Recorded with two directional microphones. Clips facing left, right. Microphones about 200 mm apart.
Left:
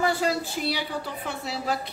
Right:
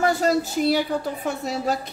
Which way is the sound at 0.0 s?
45° right (ahead or behind).